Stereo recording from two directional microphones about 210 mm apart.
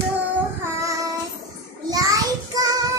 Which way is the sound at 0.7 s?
15° right (ahead or behind).